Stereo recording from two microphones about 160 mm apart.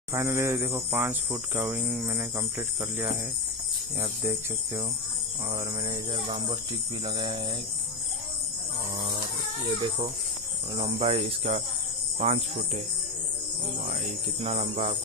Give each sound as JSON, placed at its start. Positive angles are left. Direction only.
{"t": 0.1, "sound": "speech", "side_deg": -15}
{"t": 1.8, "sound": "speech", "side_deg": 0}
{"t": 2.0, "sound": "speech", "side_deg": -15}
{"t": 4.0, "sound": "speech", "side_deg": -15}
{"t": 5.9, "sound": "a sound", "side_deg": -25}
{"t": 9.8, "sound": "a sound", "side_deg": -30}
{"t": 11.0, "sound": "speech", "side_deg": -40}
{"t": 12.2, "sound": "cricket", "side_deg": -40}
{"t": 14.4, "sound": "speech", "side_deg": -35}